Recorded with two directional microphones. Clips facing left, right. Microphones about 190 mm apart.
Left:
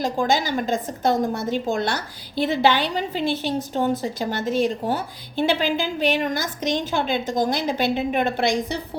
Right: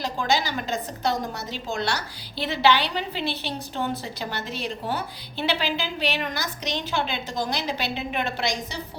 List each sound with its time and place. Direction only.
0.0 s a woman's voice: 50° left (ahead or behind)